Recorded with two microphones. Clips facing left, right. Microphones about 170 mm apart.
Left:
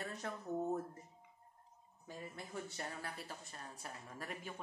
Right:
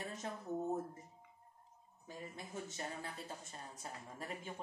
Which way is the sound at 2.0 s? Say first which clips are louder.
Even; 20° right (ahead or behind).